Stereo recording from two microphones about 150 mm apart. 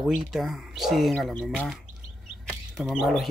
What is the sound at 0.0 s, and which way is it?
Speech, centre (ahead or behind).